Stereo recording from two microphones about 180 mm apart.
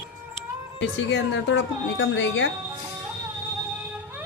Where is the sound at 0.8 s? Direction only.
90° left.